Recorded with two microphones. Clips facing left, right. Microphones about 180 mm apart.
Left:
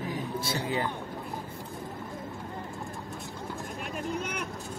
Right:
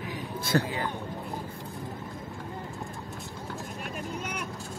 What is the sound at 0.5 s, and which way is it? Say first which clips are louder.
Speech: right 12 dB; 60° right (ahead or behind).